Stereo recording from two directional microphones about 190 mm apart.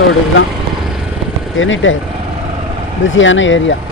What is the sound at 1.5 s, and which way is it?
Speech, 90° left.